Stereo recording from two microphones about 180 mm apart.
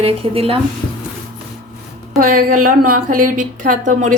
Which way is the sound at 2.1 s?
50° right (ahead or behind).